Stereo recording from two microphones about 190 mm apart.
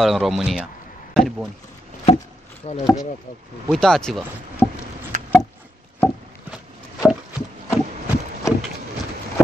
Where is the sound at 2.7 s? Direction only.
35° left (ahead or behind).